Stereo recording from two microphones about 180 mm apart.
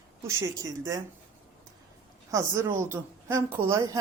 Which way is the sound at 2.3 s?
15° right (ahead or behind).